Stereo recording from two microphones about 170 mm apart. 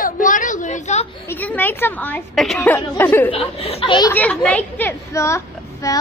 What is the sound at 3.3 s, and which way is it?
Speech, 35° left (ahead or behind).